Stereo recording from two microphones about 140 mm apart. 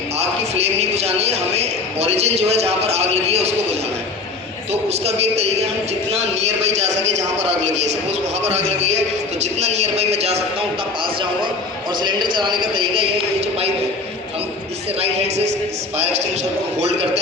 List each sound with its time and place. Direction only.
0.2 s a sound: 50° right (ahead or behind)
4.7 s a man's voice: 50° right (ahead or behind)
12.4 s speech: 35° right (ahead or behind)
14.9 s speech: 45° right (ahead or behind)